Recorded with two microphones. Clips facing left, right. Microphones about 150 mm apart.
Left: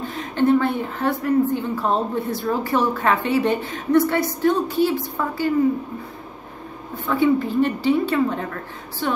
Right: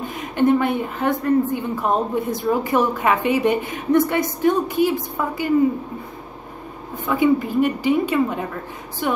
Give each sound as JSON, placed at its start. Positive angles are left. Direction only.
{"t": 0.0, "sound": "a woman's voice", "side_deg": -15}
{"t": 7.1, "sound": "a woman's voice", "side_deg": -15}